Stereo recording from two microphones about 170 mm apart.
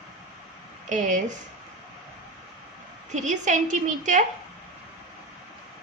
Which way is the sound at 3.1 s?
45° right (ahead or behind).